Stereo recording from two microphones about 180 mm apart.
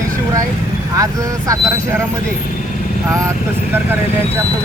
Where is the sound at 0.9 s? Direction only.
20° right (ahead or behind).